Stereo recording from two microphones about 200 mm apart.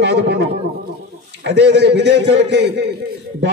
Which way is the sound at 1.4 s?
55° right (ahead or behind).